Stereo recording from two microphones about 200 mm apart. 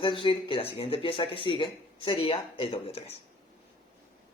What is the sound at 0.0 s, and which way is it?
Speech, 25° left (ahead or behind).